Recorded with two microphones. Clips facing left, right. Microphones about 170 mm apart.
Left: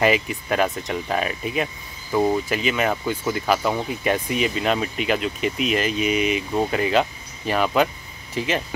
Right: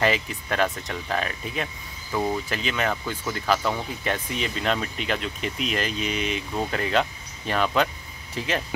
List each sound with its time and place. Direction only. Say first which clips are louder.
0.0 s speech: left 4 dB; 10° left (ahead or behind)